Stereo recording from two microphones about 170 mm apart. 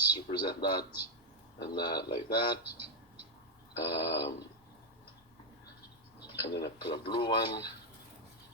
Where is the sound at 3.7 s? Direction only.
70° left (ahead or behind).